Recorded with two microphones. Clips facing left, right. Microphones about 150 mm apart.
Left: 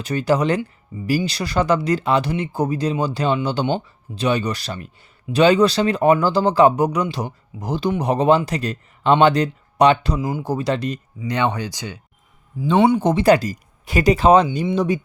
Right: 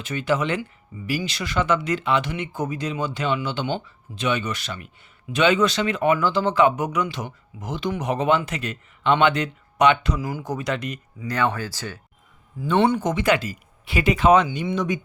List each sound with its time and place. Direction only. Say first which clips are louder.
0.0 s speech: left 5 dB; 40° left (ahead or behind)
10.2 s speech: left 5 dB; 20° left (ahead or behind)
10.5 s speech: left 5 dB; 30° left (ahead or behind)
11.3 s speech: left 2 dB; 20° left (ahead or behind)
13.0 s speech: left 6 dB; 35° left (ahead or behind)